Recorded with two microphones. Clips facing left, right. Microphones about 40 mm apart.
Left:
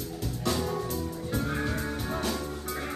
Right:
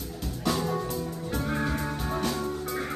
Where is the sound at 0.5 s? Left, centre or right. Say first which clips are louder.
Right 1 dB; centre.